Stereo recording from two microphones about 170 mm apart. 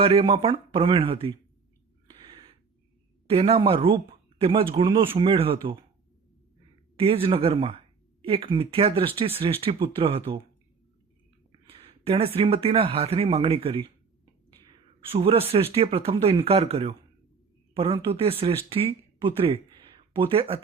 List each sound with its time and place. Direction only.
0.0 s speech: 35° right (ahead or behind)
3.2 s speech: 35° right (ahead or behind)
6.9 s speech: 35° right (ahead or behind)
11.6 s speech: 35° right (ahead or behind)
15.1 s speech: 35° right (ahead or behind)